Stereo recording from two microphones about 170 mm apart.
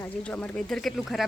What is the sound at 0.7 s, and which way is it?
Speech, centre (ahead or behind).